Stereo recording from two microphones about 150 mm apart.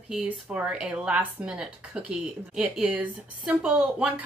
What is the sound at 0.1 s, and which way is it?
Speech, 5° right (ahead or behind).